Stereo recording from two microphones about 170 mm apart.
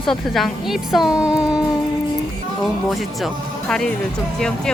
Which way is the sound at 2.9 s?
Centre (ahead or behind).